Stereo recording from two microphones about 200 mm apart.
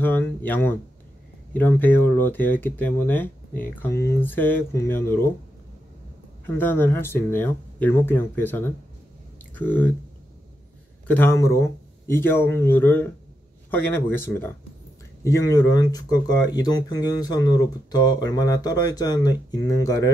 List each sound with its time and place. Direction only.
0.0 s speech: 10° left (ahead or behind)
6.4 s speech: 10° left (ahead or behind)
11.1 s speech: 10° left (ahead or behind)